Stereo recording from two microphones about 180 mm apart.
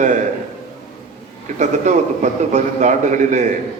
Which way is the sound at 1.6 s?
40° right (ahead or behind).